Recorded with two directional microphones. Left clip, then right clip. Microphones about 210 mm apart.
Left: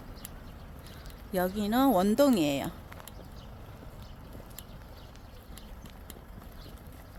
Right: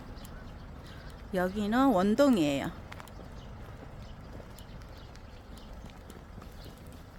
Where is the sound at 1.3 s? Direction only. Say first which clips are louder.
Left 1 dB; 15° left (ahead or behind).